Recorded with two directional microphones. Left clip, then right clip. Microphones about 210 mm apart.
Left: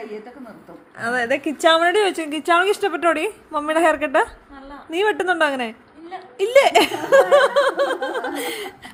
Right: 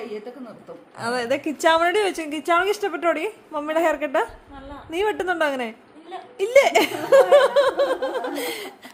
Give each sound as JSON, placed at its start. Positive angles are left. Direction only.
{"t": 0.9, "sound": "speech", "side_deg": -5}